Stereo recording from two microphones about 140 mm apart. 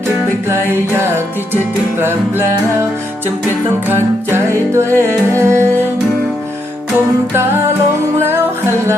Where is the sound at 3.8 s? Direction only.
15° right (ahead or behind).